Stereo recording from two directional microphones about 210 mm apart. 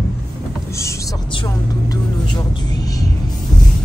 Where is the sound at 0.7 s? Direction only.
20° left (ahead or behind).